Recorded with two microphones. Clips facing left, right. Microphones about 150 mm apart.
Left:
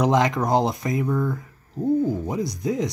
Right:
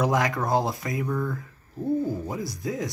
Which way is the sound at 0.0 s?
20° left (ahead or behind).